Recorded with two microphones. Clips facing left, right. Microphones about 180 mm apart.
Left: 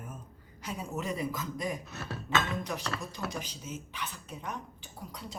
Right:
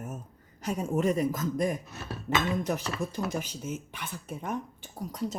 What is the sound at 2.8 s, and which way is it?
Speech, 15° right (ahead or behind).